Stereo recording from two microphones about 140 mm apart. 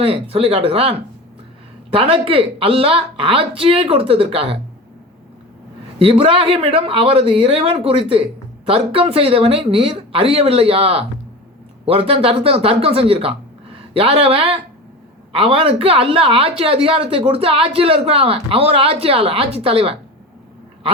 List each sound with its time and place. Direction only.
0.0 s a woman's voice: 45° right (ahead or behind)
6.0 s a woman's voice: 40° right (ahead or behind)